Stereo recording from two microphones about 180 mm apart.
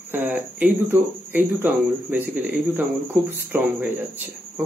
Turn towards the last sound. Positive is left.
turn(degrees=-10)  # may be behind; listen again after turning